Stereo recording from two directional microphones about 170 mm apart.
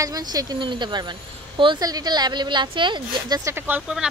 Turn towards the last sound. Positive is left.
turn(degrees=-5)  # may be behind; listen again after turning